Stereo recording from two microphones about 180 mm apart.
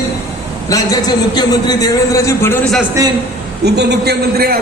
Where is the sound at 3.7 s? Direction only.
70° right (ahead or behind).